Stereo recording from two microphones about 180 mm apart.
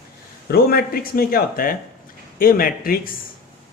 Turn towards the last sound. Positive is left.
turn(degrees=55)  # may be behind; listen again after turning